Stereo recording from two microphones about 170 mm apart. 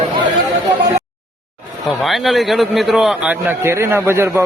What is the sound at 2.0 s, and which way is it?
A man's voice, centre (ahead or behind).